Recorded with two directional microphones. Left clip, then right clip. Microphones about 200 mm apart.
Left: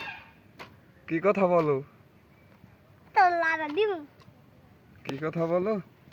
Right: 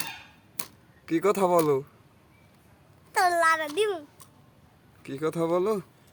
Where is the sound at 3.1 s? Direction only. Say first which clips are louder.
Even; centre (ahead or behind).